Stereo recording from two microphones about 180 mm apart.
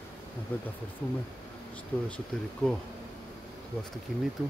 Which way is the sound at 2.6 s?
5° left (ahead or behind).